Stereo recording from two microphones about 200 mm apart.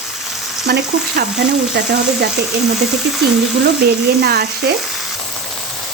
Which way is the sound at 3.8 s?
55° right (ahead or behind).